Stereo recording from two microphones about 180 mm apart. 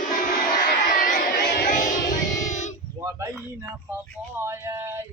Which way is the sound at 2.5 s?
40° left (ahead or behind).